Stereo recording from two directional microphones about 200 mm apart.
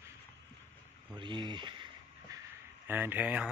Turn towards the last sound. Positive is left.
turn(degrees=-10)  # may be behind; listen again after turning